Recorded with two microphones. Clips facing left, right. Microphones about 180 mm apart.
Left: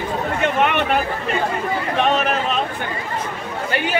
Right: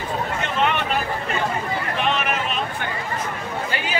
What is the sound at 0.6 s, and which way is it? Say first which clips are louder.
Chatter: left 1 dB; 60° left (ahead or behind).